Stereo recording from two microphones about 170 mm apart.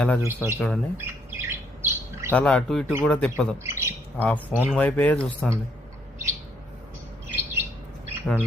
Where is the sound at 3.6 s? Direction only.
15° right (ahead or behind).